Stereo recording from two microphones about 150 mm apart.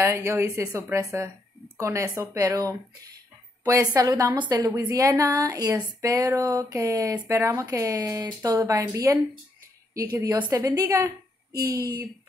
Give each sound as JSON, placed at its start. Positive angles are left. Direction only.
{"t": 0.0, "sound": "a woman's voice", "side_deg": -20}
{"t": 10.4, "sound": "a woman's voice", "side_deg": -25}